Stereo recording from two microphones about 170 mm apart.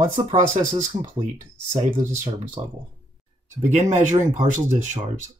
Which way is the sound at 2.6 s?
20° right (ahead or behind).